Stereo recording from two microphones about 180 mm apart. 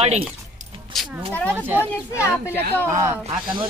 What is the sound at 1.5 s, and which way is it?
Speech, 10° right (ahead or behind).